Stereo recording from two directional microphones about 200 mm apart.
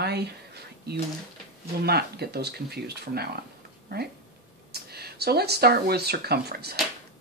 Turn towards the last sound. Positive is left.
turn(degrees=-50)  # may be behind; listen again after turning